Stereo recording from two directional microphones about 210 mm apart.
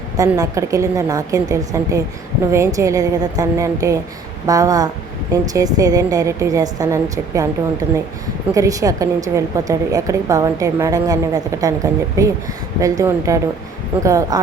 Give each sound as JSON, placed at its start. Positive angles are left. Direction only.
{"t": 0.2, "sound": "a woman's voice", "side_deg": -15}
{"t": 8.5, "sound": "a woman's voice", "side_deg": -15}